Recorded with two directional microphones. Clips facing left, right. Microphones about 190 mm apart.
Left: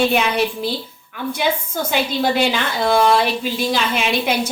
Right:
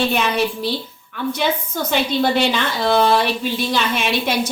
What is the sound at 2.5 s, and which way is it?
Speech, 10° left (ahead or behind).